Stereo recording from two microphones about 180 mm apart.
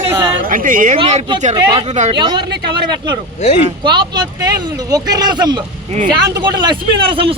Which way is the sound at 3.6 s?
25° right (ahead or behind).